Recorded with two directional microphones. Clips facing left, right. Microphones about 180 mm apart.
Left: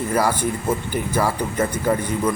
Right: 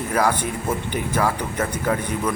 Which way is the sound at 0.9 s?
5° left (ahead or behind).